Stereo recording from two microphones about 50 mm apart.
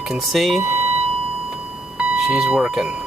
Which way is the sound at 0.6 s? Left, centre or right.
Right.